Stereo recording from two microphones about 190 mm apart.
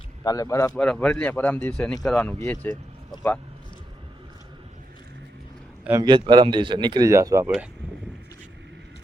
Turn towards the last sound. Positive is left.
turn(degrees=-15)  # may be behind; listen again after turning